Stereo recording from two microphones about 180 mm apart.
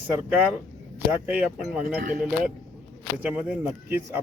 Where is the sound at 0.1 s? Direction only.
10° right (ahead or behind).